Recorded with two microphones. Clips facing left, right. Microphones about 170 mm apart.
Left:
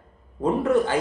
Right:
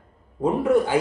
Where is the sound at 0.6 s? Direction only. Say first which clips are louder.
Right 2 dB; 10° right (ahead or behind).